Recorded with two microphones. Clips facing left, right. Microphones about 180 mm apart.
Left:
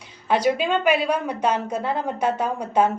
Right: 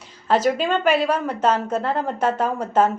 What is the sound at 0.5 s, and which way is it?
A woman's voice, 10° left (ahead or behind).